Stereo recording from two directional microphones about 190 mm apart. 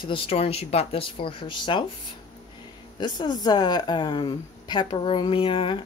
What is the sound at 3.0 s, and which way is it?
Speech, 20° left (ahead or behind).